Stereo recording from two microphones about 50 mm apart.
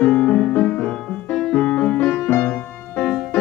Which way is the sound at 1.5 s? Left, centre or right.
Centre.